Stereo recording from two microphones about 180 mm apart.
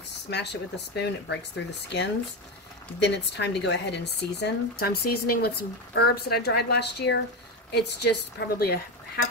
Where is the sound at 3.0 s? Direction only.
70° left (ahead or behind).